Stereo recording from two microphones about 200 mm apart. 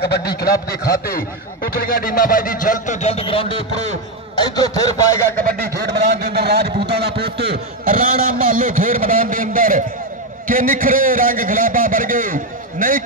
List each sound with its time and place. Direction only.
0.0 s a man's voice: 55° left (ahead or behind); by 4.8 s 20° left (ahead or behind)
5.4 s a man's voice: 45° right (ahead or behind)
5.9 s a man's voice: 55° right (ahead or behind)